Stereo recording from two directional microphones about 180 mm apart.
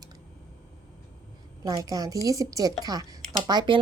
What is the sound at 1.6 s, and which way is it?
Speech, 20° right (ahead or behind).